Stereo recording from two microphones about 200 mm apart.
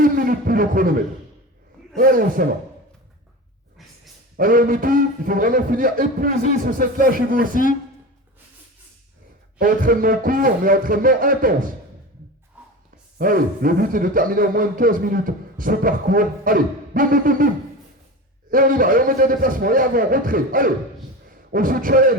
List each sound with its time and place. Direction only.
0.0 s speech: 45° right (ahead or behind)
4.4 s speech: 45° right (ahead or behind)
7.5 s speech: 45° left (ahead or behind)
9.6 s speech: 45° right (ahead or behind)
12.6 s gasp: 5° right (ahead or behind)
13.1 s speech: 45° right (ahead or behind)
18.5 s speech: 45° right (ahead or behind)